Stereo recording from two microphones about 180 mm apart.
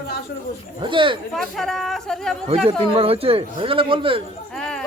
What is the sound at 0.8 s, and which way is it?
Speech, 25° right (ahead or behind).